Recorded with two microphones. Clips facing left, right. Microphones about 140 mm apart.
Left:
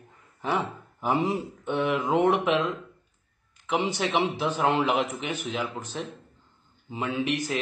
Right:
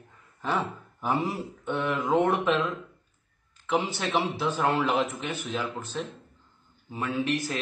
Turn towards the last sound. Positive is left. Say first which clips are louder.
# even
turn(degrees=15)  # may be behind; listen again after turning